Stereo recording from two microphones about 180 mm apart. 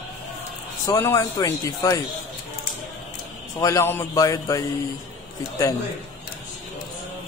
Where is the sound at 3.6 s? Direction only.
15° left (ahead or behind).